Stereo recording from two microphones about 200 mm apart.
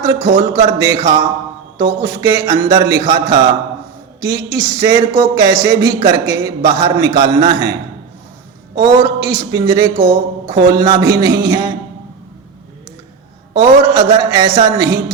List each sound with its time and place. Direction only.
0.0 s a man's voice: 20° right (ahead or behind)
8.8 s a man's voice: 20° right (ahead or behind)
13.6 s a man's voice: 15° right (ahead or behind)